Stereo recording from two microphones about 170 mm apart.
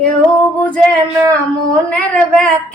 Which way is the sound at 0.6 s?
10° left (ahead or behind).